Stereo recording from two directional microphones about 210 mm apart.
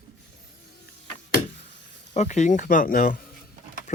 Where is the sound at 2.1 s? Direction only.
35° left (ahead or behind).